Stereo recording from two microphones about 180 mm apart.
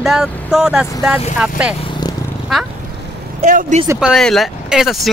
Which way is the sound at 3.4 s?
45° right (ahead or behind).